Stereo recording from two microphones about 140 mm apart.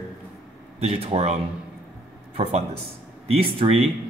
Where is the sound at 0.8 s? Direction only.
45° right (ahead or behind).